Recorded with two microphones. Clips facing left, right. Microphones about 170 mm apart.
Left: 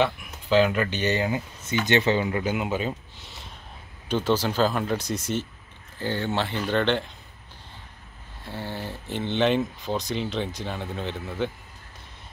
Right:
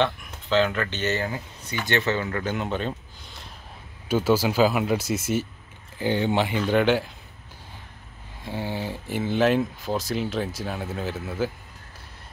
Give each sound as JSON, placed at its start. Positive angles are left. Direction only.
{"t": 0.0, "sound": "speech", "side_deg": 10}
{"t": 8.5, "sound": "speech", "side_deg": -15}